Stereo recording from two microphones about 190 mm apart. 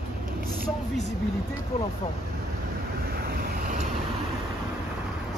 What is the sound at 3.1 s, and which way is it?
Vehicle, 55° right (ahead or behind).